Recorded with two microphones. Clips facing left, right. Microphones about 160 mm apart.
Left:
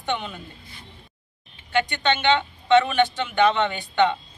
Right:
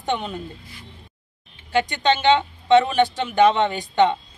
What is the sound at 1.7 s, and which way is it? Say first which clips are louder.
Speech: right 3 dB; 35° right (ahead or behind).